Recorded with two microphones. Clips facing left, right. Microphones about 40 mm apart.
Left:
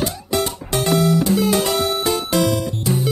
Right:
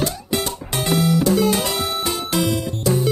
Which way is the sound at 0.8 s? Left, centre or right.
Centre.